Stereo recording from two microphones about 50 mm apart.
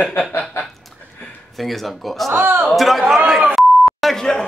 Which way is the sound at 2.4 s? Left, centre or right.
Right.